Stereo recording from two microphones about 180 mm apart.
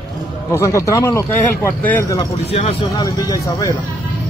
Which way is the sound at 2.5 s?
35° left (ahead or behind).